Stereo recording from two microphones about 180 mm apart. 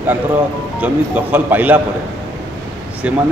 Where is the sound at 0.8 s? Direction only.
10° right (ahead or behind).